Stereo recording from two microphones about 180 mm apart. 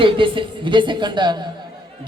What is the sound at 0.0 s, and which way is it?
A man's voice, 30° right (ahead or behind).